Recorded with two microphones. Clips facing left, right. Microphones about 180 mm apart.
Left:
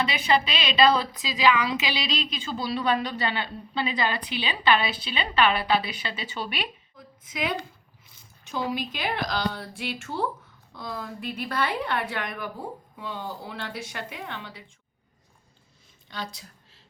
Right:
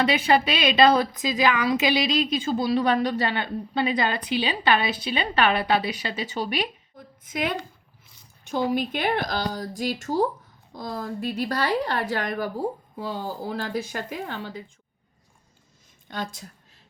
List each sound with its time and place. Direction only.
0.6 s a woman's voice: 45° right (ahead or behind)
6.5 s a sound: 45° right (ahead or behind)
8.7 s a woman's voice: 50° right (ahead or behind)
9.5 s a woman's voice: 40° right (ahead or behind)
16.0 s a woman's voice: 50° right (ahead or behind)